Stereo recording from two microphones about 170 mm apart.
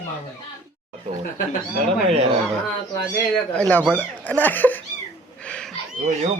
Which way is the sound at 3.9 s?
10° left (ahead or behind).